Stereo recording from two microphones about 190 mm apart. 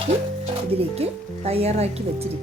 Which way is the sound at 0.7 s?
30° right (ahead or behind).